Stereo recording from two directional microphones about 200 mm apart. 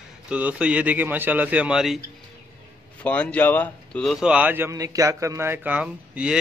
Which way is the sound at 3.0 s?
5° left (ahead or behind).